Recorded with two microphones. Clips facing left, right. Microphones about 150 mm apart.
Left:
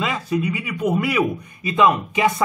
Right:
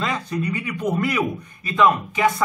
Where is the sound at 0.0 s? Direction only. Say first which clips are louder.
Left 2 dB; 5° left (ahead or behind).